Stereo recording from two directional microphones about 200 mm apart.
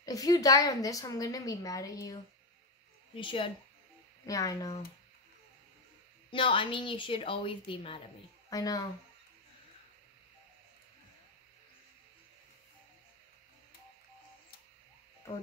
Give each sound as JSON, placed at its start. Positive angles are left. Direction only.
{"t": 0.0, "sound": "a woman's voice", "side_deg": 20}
{"t": 3.2, "sound": "a woman's voice", "side_deg": 25}
{"t": 6.3, "sound": "a woman's voice", "side_deg": 25}
{"t": 15.2, "sound": "speech", "side_deg": 15}